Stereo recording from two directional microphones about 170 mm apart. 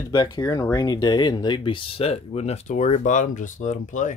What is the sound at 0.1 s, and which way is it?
Speech, 25° left (ahead or behind).